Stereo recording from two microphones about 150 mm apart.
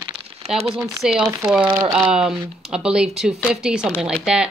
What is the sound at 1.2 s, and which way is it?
Speech, 25° right (ahead or behind).